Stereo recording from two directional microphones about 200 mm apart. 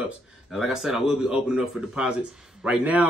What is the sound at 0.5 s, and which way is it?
A man's voice, centre (ahead or behind).